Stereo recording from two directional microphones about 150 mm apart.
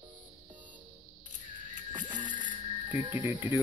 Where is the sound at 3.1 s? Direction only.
15° right (ahead or behind).